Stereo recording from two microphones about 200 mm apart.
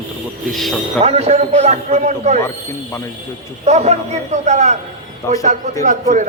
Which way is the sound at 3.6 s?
35° right (ahead or behind).